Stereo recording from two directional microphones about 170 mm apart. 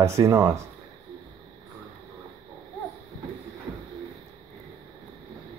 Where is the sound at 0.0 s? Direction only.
20° right (ahead or behind).